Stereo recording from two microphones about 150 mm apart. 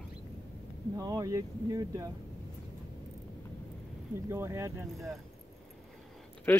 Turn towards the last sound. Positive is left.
turn(degrees=10)  # may be behind; listen again after turning